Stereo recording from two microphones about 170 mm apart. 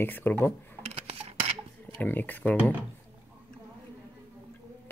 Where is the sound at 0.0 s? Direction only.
10° left (ahead or behind).